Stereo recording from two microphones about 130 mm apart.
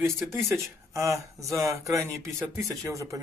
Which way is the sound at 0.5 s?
25° right (ahead or behind).